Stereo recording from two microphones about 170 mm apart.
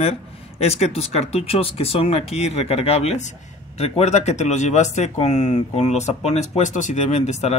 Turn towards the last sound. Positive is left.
turn(degrees=40)  # may be behind; listen again after turning